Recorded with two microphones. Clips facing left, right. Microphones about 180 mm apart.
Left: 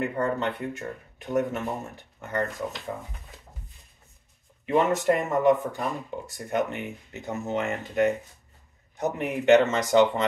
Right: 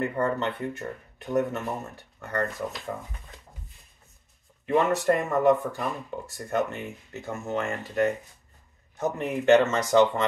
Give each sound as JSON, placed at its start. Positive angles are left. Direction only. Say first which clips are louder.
{"t": 0.0, "sound": "speech", "louder": "even", "side_deg": 10}
{"t": 4.6, "sound": "speech", "louder": "even", "side_deg": 20}